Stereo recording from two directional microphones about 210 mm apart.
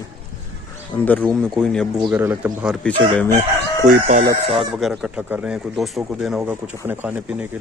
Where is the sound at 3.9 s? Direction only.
40° right (ahead or behind).